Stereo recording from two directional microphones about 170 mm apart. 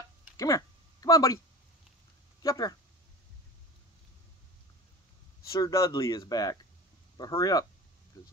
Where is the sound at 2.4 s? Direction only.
20° left (ahead or behind).